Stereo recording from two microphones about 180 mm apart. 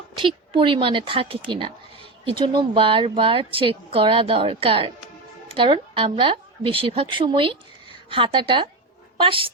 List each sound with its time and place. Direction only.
0.2 s a woman's voice: 30° right (ahead or behind)